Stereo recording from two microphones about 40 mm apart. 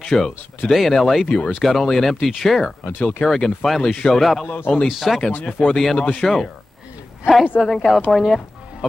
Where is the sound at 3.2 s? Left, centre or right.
Centre.